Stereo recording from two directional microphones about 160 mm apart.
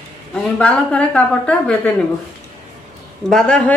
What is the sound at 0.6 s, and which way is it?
Speech, 5° left (ahead or behind).